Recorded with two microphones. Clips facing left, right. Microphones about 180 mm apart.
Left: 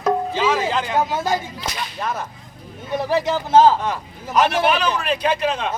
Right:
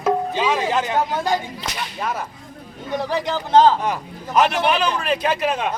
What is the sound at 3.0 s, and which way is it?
Speech, 10° left (ahead or behind).